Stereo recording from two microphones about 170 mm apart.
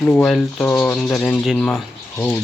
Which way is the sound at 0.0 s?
5° left (ahead or behind).